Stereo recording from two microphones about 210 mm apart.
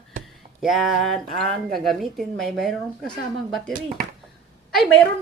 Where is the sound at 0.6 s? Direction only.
Centre (ahead or behind).